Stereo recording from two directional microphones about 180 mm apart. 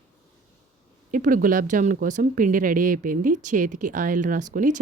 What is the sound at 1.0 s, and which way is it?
Speech, 45° right (ahead or behind).